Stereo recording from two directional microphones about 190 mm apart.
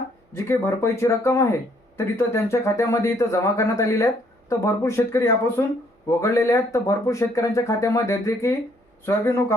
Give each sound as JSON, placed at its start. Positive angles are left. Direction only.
{"t": 0.3, "sound": "speech", "side_deg": 15}